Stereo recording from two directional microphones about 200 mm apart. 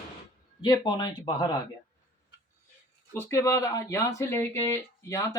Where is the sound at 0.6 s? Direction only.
20° left (ahead or behind).